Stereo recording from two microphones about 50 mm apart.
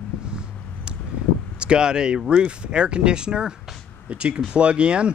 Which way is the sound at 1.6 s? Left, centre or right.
Centre.